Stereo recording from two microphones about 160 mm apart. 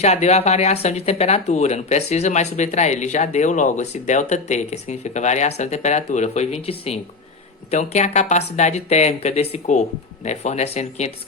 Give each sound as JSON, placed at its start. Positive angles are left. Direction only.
{"t": 0.0, "sound": "speech", "side_deg": 45}